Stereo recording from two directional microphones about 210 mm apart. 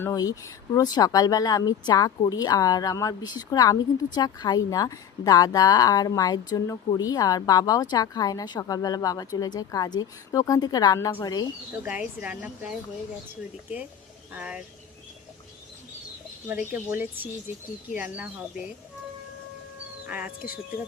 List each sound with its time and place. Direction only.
0.0 s a woman's voice: 15° left (ahead or behind)
11.9 s speech: 5° right (ahead or behind)
14.3 s speech: 5° right (ahead or behind)
16.5 s speech: 10° right (ahead or behind)
20.1 s speech: 5° right (ahead or behind)